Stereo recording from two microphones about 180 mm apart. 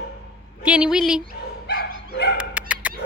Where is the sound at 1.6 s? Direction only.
60° left (ahead or behind).